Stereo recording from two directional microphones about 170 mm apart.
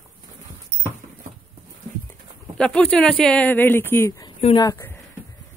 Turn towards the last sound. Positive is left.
turn(degrees=15)  # may be behind; listen again after turning